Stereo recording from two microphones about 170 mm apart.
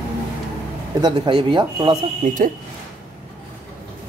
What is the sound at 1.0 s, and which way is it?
Speech, 30° right (ahead or behind).